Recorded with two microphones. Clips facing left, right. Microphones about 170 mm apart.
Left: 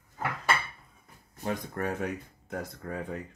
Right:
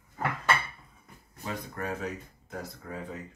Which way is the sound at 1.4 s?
55° left (ahead or behind).